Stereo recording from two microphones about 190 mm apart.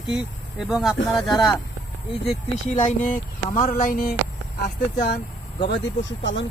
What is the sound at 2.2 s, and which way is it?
Speech, 40° left (ahead or behind).